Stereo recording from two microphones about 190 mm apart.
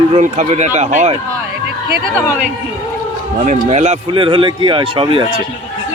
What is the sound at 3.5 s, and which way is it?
Speech, 35° right (ahead or behind).